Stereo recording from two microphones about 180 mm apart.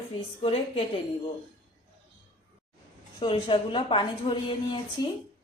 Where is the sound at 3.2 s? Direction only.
30° left (ahead or behind).